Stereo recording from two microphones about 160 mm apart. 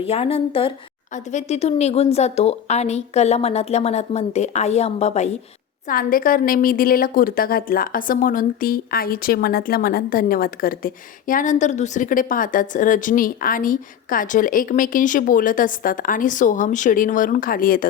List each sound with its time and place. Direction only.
0.0 s a woman's voice: 35° left (ahead or behind)
1.1 s a woman's voice: 50° left (ahead or behind)
5.9 s a woman's voice: 60° left (ahead or behind)